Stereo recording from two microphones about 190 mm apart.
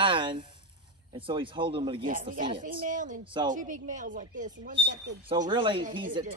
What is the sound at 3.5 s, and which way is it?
A woman's voice, 45° right (ahead or behind).